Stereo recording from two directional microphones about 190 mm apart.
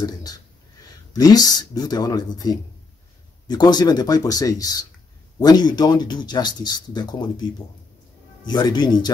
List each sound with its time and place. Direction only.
0.0 s speech: 20° left (ahead or behind)